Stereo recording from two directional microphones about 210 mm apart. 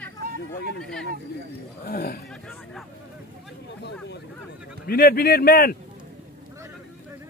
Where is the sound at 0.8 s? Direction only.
5° left (ahead or behind).